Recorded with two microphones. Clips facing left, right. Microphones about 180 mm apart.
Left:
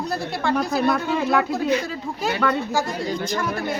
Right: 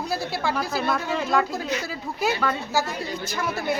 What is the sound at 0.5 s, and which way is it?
Speech, 55° left (ahead or behind).